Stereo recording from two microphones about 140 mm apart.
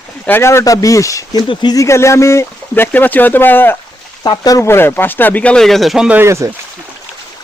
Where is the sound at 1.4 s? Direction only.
35° left (ahead or behind); by 3.7 s 15° left (ahead or behind).